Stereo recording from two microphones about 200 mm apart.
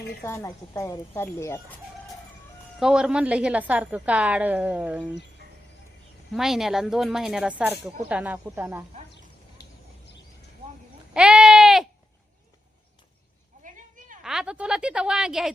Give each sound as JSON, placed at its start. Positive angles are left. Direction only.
{"t": 0.2, "sound": "a woman's voice", "side_deg": 15}
{"t": 2.7, "sound": "a woman's voice", "side_deg": -5}
{"t": 6.3, "sound": "a woman's voice", "side_deg": 0}
{"t": 11.1, "sound": "sheep", "side_deg": -5}
{"t": 13.7, "sound": "a sound", "side_deg": -40}
{"t": 14.3, "sound": "speech", "side_deg": -5}